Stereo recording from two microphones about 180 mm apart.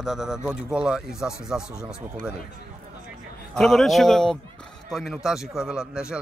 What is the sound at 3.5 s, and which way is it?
Speech, centre (ahead or behind).